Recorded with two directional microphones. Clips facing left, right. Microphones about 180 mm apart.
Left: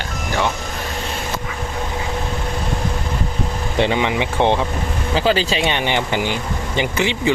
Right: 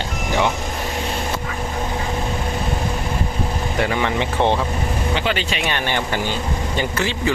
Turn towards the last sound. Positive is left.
turn(degrees=20)  # may be behind; listen again after turning